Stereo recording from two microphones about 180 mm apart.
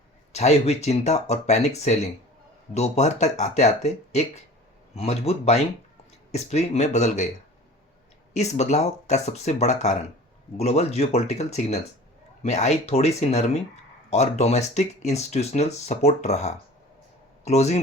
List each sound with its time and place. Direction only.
0.3 s speech: 35° left (ahead or behind)
8.3 s speech: 40° left (ahead or behind)